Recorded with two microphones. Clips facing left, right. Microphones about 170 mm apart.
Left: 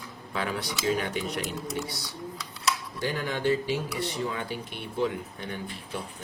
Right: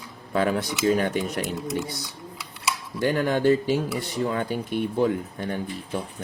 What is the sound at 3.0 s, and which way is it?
A man's voice, 55° right (ahead or behind).